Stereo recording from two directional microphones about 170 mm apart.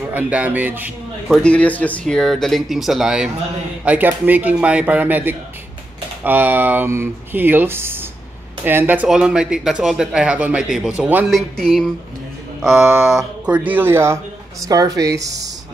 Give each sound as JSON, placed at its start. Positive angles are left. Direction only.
{"t": 0.0, "sound": "speech", "side_deg": -10}
{"t": 1.4, "sound": "a man's voice", "side_deg": 5}
{"t": 11.2, "sound": "speech", "side_deg": 0}
{"t": 12.7, "sound": "a man's voice", "side_deg": -15}
{"t": 13.1, "sound": "a man's voice", "side_deg": -5}